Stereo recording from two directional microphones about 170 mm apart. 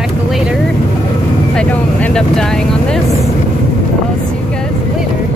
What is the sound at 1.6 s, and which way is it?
Vehicle, 5° left (ahead or behind).